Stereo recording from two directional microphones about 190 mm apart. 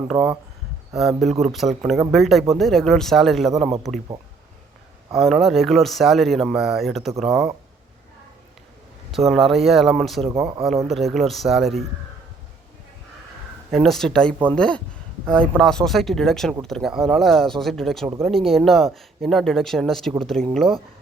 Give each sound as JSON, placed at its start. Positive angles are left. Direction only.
{"t": 0.1, "sound": "speech", "side_deg": 0}
{"t": 5.2, "sound": "speech", "side_deg": 0}
{"t": 9.1, "sound": "speech", "side_deg": 0}
{"t": 10.4, "sound": "speech", "side_deg": -30}
{"t": 10.8, "sound": "speech", "side_deg": 0}
{"t": 13.7, "sound": "speech", "side_deg": 0}